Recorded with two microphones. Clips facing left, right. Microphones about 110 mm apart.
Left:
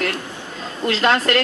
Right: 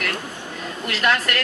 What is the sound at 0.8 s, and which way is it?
Speech, 30° left (ahead or behind).